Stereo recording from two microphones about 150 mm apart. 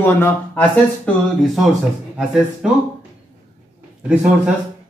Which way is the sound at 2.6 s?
5° right (ahead or behind).